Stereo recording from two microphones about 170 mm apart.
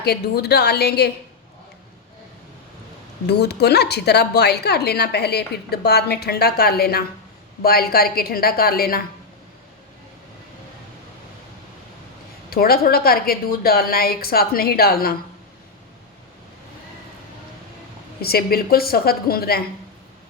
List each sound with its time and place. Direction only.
0.0 s a woman's voice: 70° left (ahead or behind)
3.2 s a woman's voice: 70° left (ahead or behind)
12.5 s a woman's voice: 60° left (ahead or behind)
18.2 s a woman's voice: 65° left (ahead or behind)